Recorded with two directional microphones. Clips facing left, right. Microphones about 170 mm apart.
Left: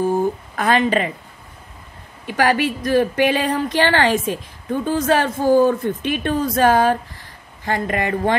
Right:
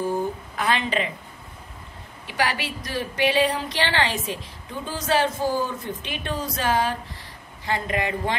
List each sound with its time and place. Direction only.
0.6 s speech: 50° left (ahead or behind)
2.2 s speech: 50° left (ahead or behind)